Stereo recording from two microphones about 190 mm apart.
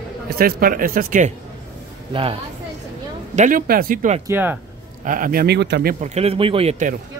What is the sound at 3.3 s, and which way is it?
Speech, 45° right (ahead or behind).